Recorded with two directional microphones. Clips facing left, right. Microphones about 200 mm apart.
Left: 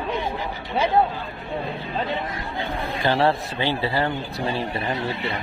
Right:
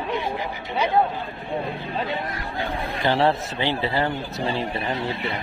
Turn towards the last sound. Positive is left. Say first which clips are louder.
# even
turn(degrees=-20)  # may be behind; listen again after turning